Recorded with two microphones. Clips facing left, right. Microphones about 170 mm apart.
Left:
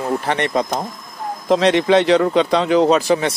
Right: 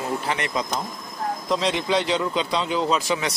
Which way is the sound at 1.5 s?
70° left (ahead or behind).